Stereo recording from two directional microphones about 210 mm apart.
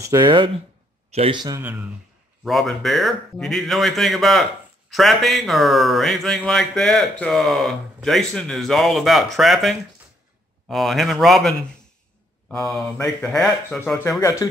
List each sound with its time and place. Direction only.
0.0 s a man's voice: 20° right (ahead or behind); by 14.5 s 15° left (ahead or behind)